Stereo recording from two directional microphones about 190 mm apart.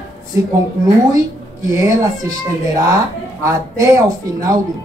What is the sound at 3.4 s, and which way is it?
Speech, 15° right (ahead or behind).